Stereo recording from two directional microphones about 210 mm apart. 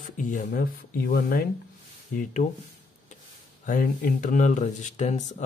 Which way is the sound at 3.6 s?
40° left (ahead or behind).